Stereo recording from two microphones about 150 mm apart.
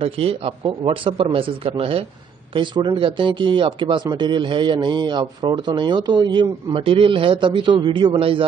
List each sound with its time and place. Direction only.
0.0 s speech: 40° right (ahead or behind)